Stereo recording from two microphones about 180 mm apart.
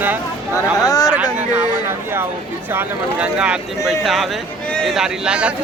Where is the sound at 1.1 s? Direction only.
10° right (ahead or behind).